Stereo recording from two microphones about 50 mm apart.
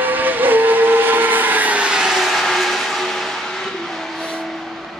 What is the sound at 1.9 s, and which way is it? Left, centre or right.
Vehicle, centre.